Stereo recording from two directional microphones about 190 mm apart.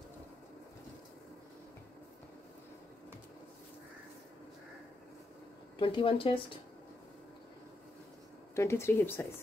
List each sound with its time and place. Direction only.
5.8 s speech: 25° left (ahead or behind)
8.5 s speech: 15° left (ahead or behind)